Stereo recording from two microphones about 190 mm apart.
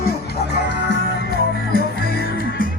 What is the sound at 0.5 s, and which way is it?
Music, 65° left (ahead or behind).